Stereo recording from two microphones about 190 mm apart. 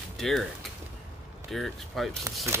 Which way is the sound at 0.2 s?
Centre (ahead or behind).